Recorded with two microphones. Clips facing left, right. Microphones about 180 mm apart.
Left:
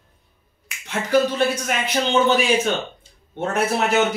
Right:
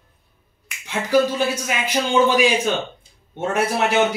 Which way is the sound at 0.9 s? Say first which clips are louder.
Right 1 dB; 10° right (ahead or behind).